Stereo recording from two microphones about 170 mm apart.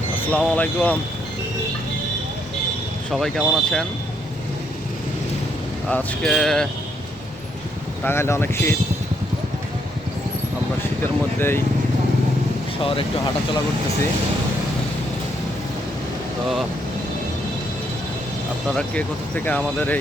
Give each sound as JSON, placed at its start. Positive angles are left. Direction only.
{"t": 0.3, "sound": "speech", "side_deg": 10}
{"t": 3.1, "sound": "speech", "side_deg": 0}
{"t": 5.9, "sound": "speech", "side_deg": 10}
{"t": 8.0, "sound": "speech", "side_deg": 15}
{"t": 11.0, "sound": "speech", "side_deg": 15}
{"t": 12.8, "sound": "speech", "side_deg": 30}
{"t": 18.7, "sound": "speech", "side_deg": 5}